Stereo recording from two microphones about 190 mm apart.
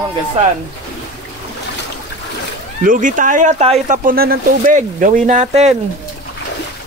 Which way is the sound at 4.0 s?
50° right (ahead or behind).